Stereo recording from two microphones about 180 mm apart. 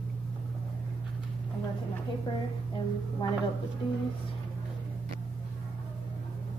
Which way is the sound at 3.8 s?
30° left (ahead or behind).